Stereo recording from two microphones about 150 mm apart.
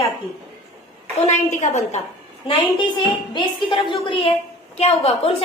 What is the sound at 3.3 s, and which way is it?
A woman's voice, 35° left (ahead or behind).